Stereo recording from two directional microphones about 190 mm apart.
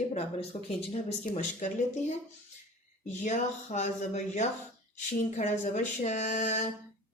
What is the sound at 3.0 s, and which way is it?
Speech, 40° left (ahead or behind).